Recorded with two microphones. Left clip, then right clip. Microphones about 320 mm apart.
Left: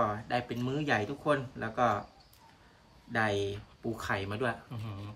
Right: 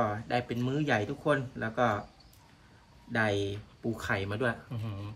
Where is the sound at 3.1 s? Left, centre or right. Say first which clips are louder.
Right 1 dB; centre.